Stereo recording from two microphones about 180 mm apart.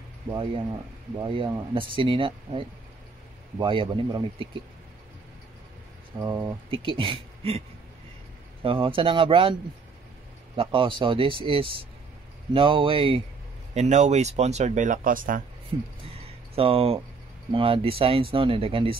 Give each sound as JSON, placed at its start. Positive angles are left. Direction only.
{"t": 0.3, "sound": "speech", "side_deg": -25}
{"t": 6.1, "sound": "speech", "side_deg": -20}
{"t": 8.6, "sound": "speech", "side_deg": -30}
{"t": 15.7, "sound": "speech", "side_deg": -25}